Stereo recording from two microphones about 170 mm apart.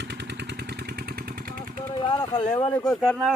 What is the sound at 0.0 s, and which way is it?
Vehicle, 90° right.